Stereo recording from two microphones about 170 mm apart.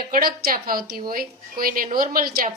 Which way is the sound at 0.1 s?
60° right (ahead or behind).